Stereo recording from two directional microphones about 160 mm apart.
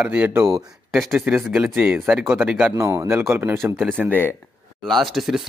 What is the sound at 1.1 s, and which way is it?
A man's voice, 10° right (ahead or behind).